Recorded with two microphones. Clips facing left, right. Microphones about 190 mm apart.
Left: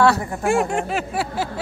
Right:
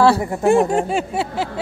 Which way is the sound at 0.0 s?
30° right (ahead or behind).